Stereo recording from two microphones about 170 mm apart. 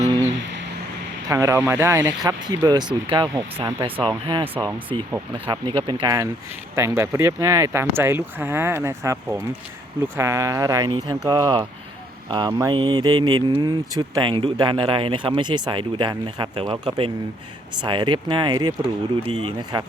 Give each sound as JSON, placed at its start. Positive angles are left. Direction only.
{"t": 1.3, "sound": "speech", "side_deg": -20}